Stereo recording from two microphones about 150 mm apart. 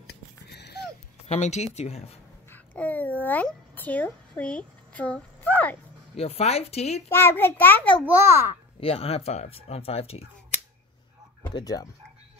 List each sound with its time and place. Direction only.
0.0 s wheeze: 90° left
1.2 s speech: 50° left (ahead or behind)
2.5 s a sound: 10° left (ahead or behind)
6.1 s speech: 40° left (ahead or behind)
7.2 s a child's voice: 15° left (ahead or behind)
8.0 s a child's voice: 15° right (ahead or behind)
8.7 s speech: 40° left (ahead or behind)
11.4 s speech: 25° left (ahead or behind)